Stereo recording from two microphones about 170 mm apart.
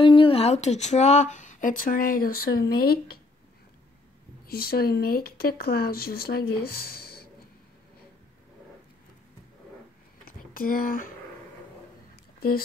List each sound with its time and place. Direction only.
0.0 s speech: 30° left (ahead or behind); by 3.2 s 65° left (ahead or behind)
4.5 s speech: 65° left (ahead or behind)
10.2 s a sound: 55° left (ahead or behind)
12.4 s speech: 60° left (ahead or behind)